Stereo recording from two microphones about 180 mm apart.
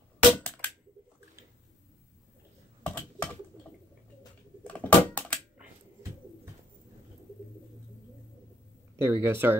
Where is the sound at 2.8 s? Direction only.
10° left (ahead or behind).